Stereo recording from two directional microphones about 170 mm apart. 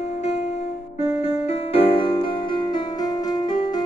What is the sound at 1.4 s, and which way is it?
Music, 35° left (ahead or behind).